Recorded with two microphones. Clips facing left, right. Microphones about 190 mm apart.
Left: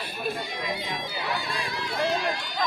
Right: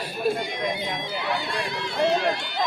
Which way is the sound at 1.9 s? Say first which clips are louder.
Right 5 dB; 25° right (ahead or behind).